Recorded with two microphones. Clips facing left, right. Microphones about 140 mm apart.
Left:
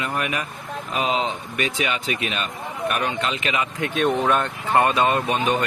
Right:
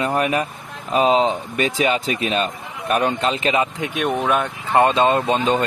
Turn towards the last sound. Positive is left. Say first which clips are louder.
# right 3 dB
turn(degrees=-25)  # may be behind; listen again after turning